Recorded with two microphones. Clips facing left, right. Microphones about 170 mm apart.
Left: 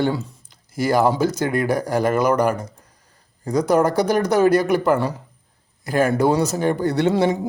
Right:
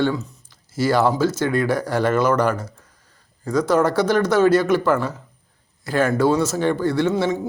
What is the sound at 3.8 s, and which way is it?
Speech, 15° left (ahead or behind).